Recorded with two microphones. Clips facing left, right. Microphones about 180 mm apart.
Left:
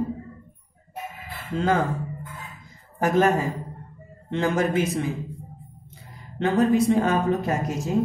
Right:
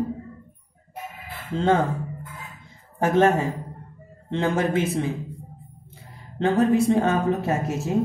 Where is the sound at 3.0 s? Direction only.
25° right (ahead or behind).